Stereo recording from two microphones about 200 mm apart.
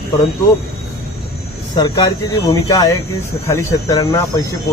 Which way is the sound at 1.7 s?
20° left (ahead or behind).